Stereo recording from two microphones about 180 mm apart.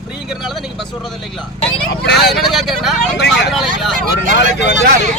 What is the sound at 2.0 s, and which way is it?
Speech, 70° left (ahead or behind).